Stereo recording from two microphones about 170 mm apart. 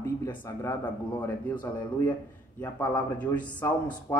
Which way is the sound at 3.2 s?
10° left (ahead or behind).